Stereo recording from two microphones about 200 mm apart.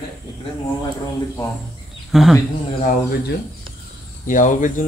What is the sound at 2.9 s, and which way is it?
Speech, 50° left (ahead or behind).